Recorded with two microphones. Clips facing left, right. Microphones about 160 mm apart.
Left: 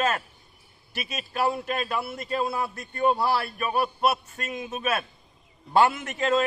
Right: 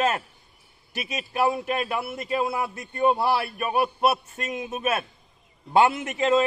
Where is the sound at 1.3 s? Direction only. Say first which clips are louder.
Right 2 dB; 20° right (ahead or behind).